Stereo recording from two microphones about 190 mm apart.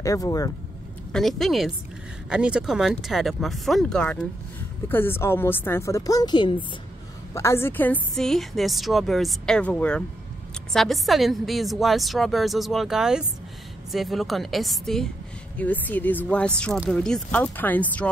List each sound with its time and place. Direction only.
0.0 s speech: 15° left (ahead or behind)
1.1 s a woman's voice: centre (ahead or behind)